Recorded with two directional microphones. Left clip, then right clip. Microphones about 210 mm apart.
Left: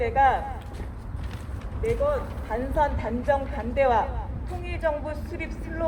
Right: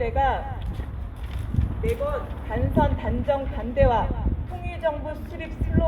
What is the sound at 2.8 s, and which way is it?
A woman's voice, 25° left (ahead or behind).